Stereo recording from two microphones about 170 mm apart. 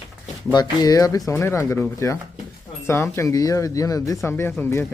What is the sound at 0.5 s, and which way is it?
Speech, 25° left (ahead or behind).